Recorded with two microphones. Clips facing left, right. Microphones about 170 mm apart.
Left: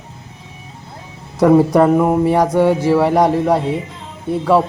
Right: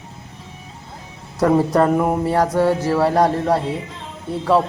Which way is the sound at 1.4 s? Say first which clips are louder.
Left 5 dB; 10° left (ahead or behind).